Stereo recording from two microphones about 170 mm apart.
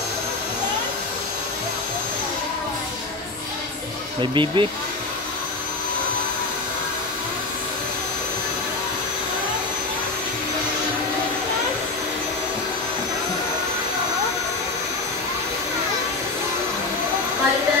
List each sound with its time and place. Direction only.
4.2 s speech: 30° right (ahead or behind)